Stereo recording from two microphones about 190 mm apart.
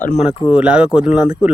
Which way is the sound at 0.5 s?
5° right (ahead or behind).